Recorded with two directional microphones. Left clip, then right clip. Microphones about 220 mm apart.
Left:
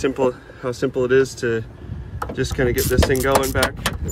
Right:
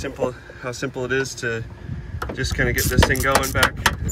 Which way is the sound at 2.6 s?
Centre (ahead or behind).